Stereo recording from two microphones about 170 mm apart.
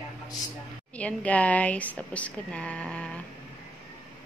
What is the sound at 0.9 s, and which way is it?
A woman's voice, 10° left (ahead or behind).